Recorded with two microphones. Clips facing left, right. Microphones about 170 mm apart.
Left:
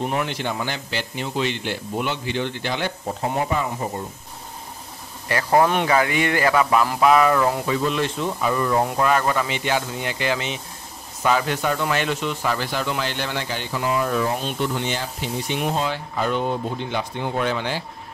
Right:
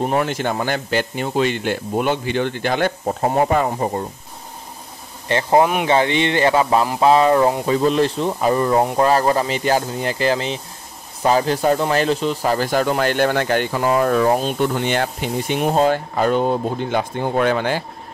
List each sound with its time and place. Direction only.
0.0 s speech: 40° right (ahead or behind)
3.5 s speech: 55° right (ahead or behind)
5.3 s speech: 20° right (ahead or behind); by 15.6 s 55° right (ahead or behind)
15.6 s speech: 45° right (ahead or behind)